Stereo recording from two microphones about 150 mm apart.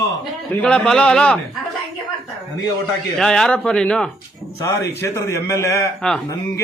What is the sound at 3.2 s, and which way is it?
Speech, 5° left (ahead or behind).